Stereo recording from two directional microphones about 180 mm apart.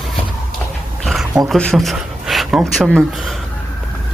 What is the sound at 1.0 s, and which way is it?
Roaring cats, centre (ahead or behind).